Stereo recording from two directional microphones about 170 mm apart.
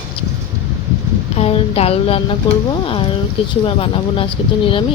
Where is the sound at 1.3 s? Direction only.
35° left (ahead or behind).